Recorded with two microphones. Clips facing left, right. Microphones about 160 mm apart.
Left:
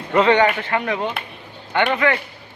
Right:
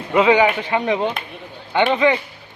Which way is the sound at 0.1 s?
10° right (ahead or behind).